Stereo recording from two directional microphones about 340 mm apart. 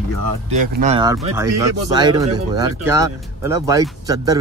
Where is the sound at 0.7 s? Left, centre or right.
Centre.